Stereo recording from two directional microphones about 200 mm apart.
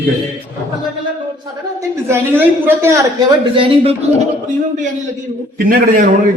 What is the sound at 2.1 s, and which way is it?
Speech, 10° right (ahead or behind).